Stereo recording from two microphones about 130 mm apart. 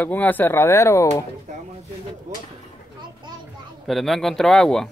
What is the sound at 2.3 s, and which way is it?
Speech, 65° right (ahead or behind).